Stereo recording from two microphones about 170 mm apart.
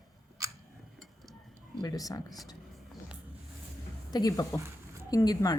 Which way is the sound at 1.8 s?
20° left (ahead or behind).